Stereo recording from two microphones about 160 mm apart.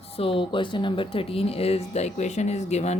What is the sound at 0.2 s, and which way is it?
Speech, 35° left (ahead or behind).